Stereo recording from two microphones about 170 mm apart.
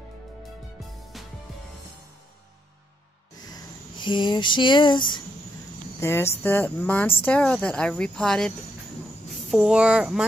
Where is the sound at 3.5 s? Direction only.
25° left (ahead or behind).